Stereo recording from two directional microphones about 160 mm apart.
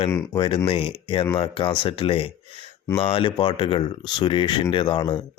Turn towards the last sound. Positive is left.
turn(degrees=30)  # may be behind; listen again after turning